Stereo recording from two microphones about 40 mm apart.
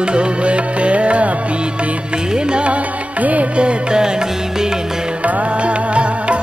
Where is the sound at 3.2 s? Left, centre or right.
Right.